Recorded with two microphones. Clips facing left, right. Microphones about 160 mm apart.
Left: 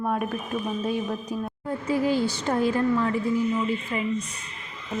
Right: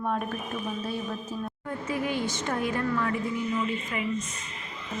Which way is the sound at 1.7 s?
30° left (ahead or behind).